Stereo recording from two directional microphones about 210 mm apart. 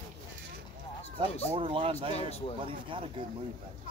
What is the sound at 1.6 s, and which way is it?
Speech, 25° right (ahead or behind).